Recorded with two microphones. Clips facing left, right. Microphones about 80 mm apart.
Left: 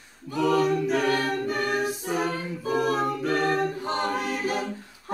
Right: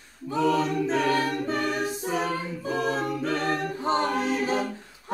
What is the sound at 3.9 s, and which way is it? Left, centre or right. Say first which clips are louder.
Choir: right 3 dB; right.